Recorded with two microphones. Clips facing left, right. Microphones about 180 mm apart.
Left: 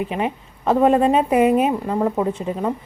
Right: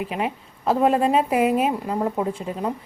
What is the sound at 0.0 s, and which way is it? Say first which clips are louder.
Speech: left 3 dB; centre (ahead or behind).